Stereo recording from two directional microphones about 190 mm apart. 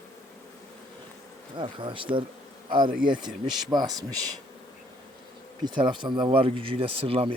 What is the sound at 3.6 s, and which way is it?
Speech, 20° right (ahead or behind).